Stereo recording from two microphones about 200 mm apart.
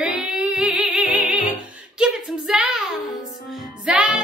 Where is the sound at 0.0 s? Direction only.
5° right (ahead or behind).